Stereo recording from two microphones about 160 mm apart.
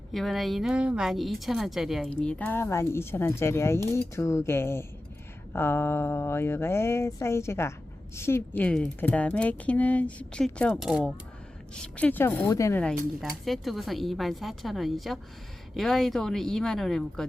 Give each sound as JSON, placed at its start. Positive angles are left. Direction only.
{"t": 0.1, "sound": "speech", "side_deg": 0}
{"t": 11.7, "sound": "speech", "side_deg": 5}
{"t": 13.4, "sound": "speech", "side_deg": 0}